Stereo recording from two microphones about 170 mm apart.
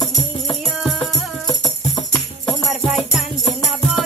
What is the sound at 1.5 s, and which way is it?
Music, 20° left (ahead or behind).